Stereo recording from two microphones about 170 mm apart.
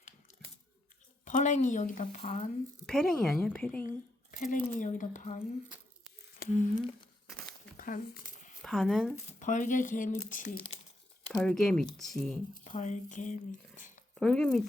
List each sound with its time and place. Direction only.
1.2 s speech: 45° left (ahead or behind)
2.8 s a woman's voice: 5° left (ahead or behind)
3.8 s a sound: 50° left (ahead or behind)
4.5 s speech: 50° left (ahead or behind)
6.4 s speech: 50° left (ahead or behind)
7.3 s crumpling: 5° left (ahead or behind)
7.8 s a sound: 55° left (ahead or behind)
8.6 s a woman's voice: centre (ahead or behind)
9.4 s speech: 50° left (ahead or behind)
11.3 s a woman's voice: centre (ahead or behind)
12.6 s speech: 45° left (ahead or behind)
14.2 s a woman's voice: 5° left (ahead or behind)